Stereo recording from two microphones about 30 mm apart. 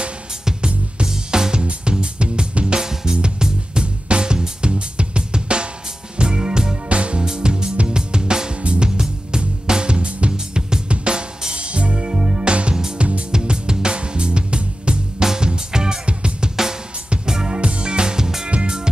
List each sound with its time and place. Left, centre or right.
0.6 s music: right
1.0 s music: right
1.6 s music: right
6.9 s music: right
7.2 s music: right
10.3 s music: right
13.3 s music: right
15.1 s music: right
16.1 s music: right
17.3 s music: right
17.6 s music: right